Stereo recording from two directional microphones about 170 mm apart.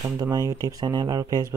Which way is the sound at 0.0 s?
20° right (ahead or behind).